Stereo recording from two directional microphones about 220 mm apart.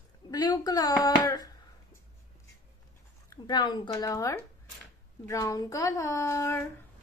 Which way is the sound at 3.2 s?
20° left (ahead or behind).